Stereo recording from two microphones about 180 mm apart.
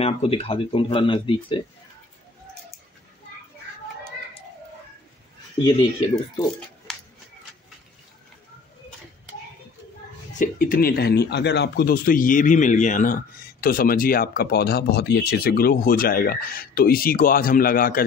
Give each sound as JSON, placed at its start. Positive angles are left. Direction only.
{"t": 0.0, "sound": "speech", "side_deg": 35}
{"t": 5.6, "sound": "speech", "side_deg": 20}
{"t": 6.9, "sound": "a sound", "side_deg": 5}
{"t": 10.3, "sound": "speech", "side_deg": 50}